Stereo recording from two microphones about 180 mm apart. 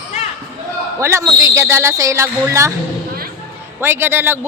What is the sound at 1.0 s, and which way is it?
Speech, 15° right (ahead or behind).